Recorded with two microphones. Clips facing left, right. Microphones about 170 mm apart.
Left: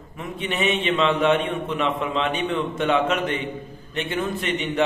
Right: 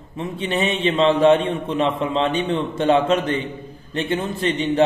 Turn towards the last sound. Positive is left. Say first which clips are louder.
# right 5 dB
turn(degrees=-30)  # may be behind; listen again after turning